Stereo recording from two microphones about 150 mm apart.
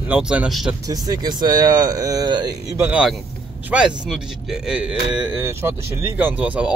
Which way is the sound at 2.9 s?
5° right (ahead or behind).